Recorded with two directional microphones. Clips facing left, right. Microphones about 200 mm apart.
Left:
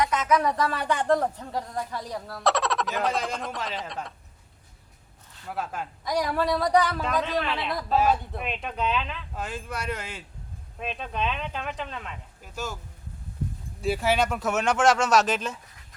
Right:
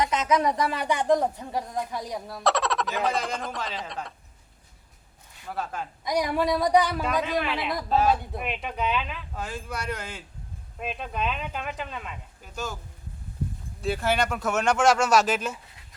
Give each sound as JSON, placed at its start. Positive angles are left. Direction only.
{"t": 0.0, "sound": "speech", "side_deg": -20}
{"t": 2.4, "sound": "speech", "side_deg": 0}
{"t": 5.5, "sound": "speech", "side_deg": 5}
{"t": 6.1, "sound": "speech", "side_deg": -15}
{"t": 7.9, "sound": "speech", "side_deg": 5}
{"t": 8.1, "sound": "speech", "side_deg": -10}
{"t": 13.8, "sound": "speech", "side_deg": 5}